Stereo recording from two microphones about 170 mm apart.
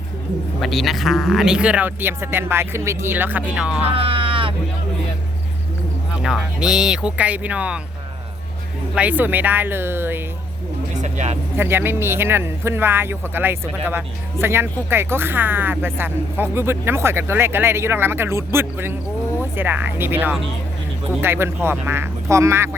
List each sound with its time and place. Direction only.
0.6 s speech: centre (ahead or behind)
3.9 s a sound: 30° right (ahead or behind)
6.2 s speech: 5° right (ahead or behind)
9.0 s speech: 10° right (ahead or behind)
11.0 s vehicle: 40° right (ahead or behind)
11.5 s speech: 10° right (ahead or behind)